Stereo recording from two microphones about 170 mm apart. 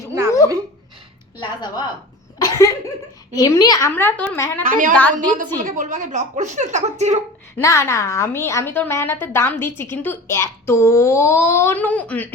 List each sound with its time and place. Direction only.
0.1 s dog: 15° right (ahead or behind)
1.4 s a woman's voice: 25° left (ahead or behind)
2.4 s cough: 20° left (ahead or behind)
3.3 s a woman's voice: 20° left (ahead or behind)
4.7 s a woman's voice: 50° right (ahead or behind)
7.6 s a woman's voice: 15° left (ahead or behind)